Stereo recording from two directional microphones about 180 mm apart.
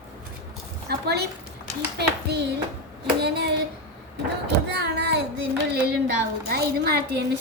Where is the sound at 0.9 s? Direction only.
65° right (ahead or behind).